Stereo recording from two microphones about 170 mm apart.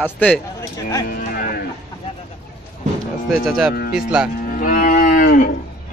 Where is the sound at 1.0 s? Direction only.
55° left (ahead or behind).